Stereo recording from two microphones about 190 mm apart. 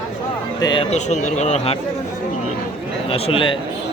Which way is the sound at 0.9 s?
40° left (ahead or behind).